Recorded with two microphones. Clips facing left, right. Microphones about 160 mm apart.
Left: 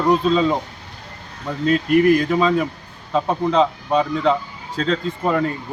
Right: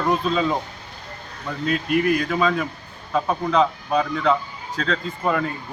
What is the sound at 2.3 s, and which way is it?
Speech, 20° left (ahead or behind).